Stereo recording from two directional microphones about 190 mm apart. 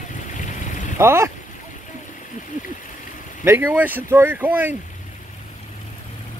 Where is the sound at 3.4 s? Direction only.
10° right (ahead or behind).